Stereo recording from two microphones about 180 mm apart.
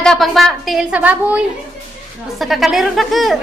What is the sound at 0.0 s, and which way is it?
A woman's voice, centre (ahead or behind).